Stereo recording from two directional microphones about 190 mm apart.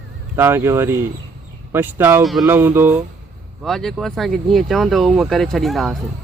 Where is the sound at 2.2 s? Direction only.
Centre (ahead or behind).